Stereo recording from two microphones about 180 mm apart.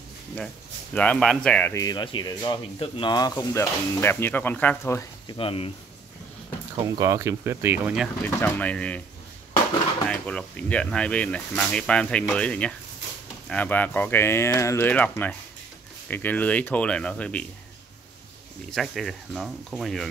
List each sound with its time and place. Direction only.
0.9 s speech: 5° left (ahead or behind)
5.4 s speech: 30° left (ahead or behind)
7.0 s speech: 15° right (ahead or behind)
8.2 s speech: 10° left (ahead or behind)
10.0 s speech: 5° left (ahead or behind)
18.7 s speech: centre (ahead or behind)